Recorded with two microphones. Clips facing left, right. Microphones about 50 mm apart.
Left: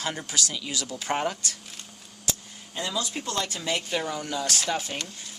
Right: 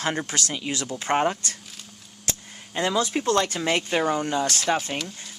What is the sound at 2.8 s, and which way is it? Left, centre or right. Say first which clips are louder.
Speech: right 7 dB; right.